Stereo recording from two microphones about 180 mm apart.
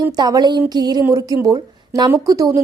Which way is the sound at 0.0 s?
20° right (ahead or behind).